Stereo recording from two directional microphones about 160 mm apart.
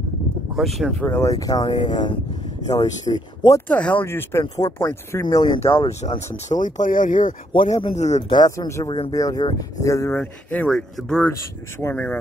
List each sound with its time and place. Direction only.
0.6 s speech: centre (ahead or behind)
1.0 s speech: 15° left (ahead or behind)
3.6 s speech: 10° left (ahead or behind)
5.2 s speech: 30° left (ahead or behind); by 7.3 s 55° left (ahead or behind)
7.9 s speech: 45° left (ahead or behind)
8.3 s speech: 20° left (ahead or behind)